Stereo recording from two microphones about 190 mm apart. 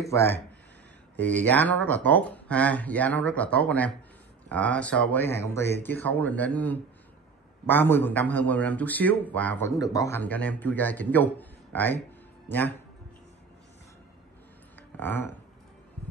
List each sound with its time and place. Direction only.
0.1 s a man's voice: 15° left (ahead or behind)
15.0 s a man's voice: 10° left (ahead or behind)